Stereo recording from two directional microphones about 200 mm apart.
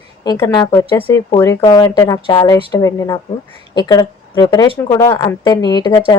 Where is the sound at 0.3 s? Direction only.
15° left (ahead or behind).